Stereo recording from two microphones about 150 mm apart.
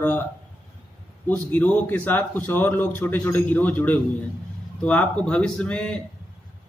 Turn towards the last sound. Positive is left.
turn(degrees=5)  # may be behind; listen again after turning